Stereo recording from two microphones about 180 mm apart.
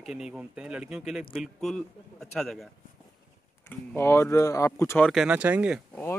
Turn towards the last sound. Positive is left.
turn(degrees=-5)  # may be behind; listen again after turning